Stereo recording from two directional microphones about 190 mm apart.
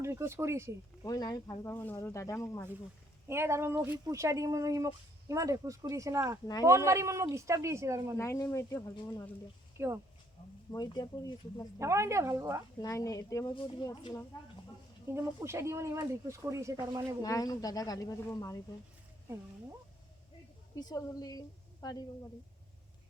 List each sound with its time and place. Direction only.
0.0 s speech: 15° right (ahead or behind)
1.0 s speech: 20° left (ahead or behind)
3.2 s speech: 15° right (ahead or behind)
8.2 s speech: 15° left (ahead or behind)
9.7 s speech: 15° right (ahead or behind)
10.7 s speech: 20° left (ahead or behind)
11.8 s speech: 15° right (ahead or behind)
12.8 s speech: 20° left (ahead or behind)
15.1 s speech: 15° right (ahead or behind)
17.2 s speech: 20° left (ahead or behind)
20.7 s a woman's voice: 20° left (ahead or behind)